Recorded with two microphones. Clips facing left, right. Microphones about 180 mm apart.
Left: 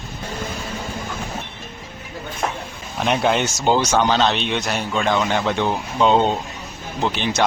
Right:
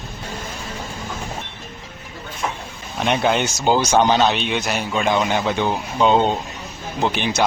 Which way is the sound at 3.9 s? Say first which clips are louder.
Right 2 dB; 15° right (ahead or behind).